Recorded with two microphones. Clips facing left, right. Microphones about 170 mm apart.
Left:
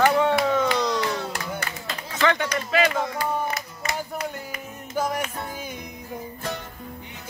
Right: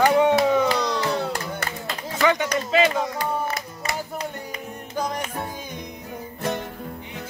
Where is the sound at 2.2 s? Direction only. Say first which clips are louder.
Right 2 dB; 15° right (ahead or behind).